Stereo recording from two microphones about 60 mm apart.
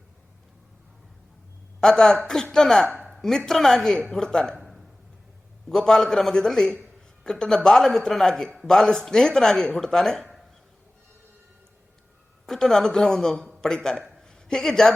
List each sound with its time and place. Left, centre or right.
1.8 s speech: centre
4.5 s a sound: centre
5.6 s speech: centre
12.5 s a woman's voice: centre